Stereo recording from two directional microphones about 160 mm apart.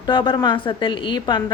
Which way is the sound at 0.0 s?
30° left (ahead or behind).